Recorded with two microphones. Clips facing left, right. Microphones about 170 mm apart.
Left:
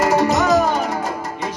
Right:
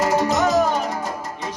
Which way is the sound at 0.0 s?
70° left (ahead or behind).